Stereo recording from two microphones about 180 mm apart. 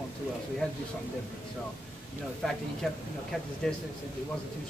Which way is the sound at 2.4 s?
5° left (ahead or behind).